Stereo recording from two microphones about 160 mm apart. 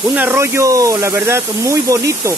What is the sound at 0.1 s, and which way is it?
Speech, 10° right (ahead or behind).